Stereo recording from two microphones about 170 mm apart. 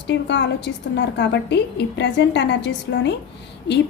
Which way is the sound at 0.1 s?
90° left.